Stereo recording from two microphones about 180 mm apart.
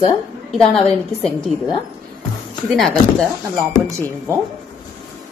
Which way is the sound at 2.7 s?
Centre (ahead or behind).